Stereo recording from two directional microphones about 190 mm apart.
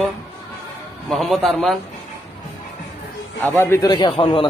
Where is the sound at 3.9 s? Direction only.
25° left (ahead or behind).